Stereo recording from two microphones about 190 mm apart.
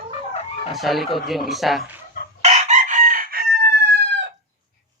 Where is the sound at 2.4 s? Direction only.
35° right (ahead or behind); by 4.2 s 65° right (ahead or behind).